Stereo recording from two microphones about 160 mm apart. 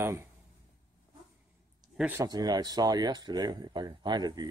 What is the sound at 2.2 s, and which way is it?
Speech, 25° right (ahead or behind).